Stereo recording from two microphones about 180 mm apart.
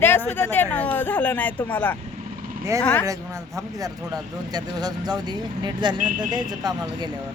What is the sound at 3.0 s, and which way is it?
Speech, 20° right (ahead or behind).